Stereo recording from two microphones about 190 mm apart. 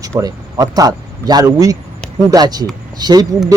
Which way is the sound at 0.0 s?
20° right (ahead or behind).